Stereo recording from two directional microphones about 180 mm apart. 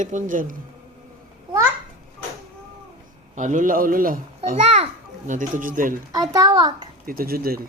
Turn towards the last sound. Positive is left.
turn(degrees=-55)  # may be behind; listen again after turning